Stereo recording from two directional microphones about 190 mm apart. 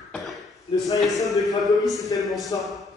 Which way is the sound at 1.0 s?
Centre (ahead or behind).